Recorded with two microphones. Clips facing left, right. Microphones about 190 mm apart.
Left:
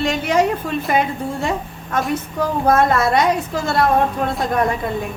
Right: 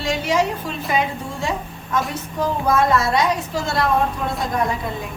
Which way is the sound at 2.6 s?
55° left (ahead or behind).